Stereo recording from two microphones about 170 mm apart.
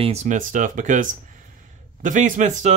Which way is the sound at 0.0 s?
40° right (ahead or behind).